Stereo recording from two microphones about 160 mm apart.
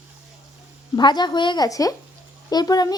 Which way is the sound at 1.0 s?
30° left (ahead or behind).